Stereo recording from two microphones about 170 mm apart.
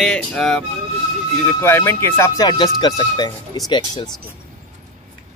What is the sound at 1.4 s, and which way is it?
Speech, 15° left (ahead or behind).